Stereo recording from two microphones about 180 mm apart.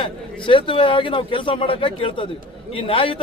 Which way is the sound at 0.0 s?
30° left (ahead or behind).